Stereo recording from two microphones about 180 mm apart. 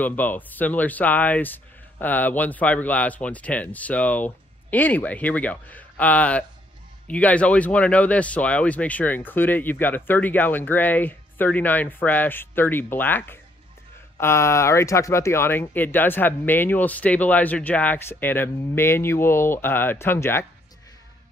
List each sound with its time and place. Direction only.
0.0 s speech: 10° left (ahead or behind)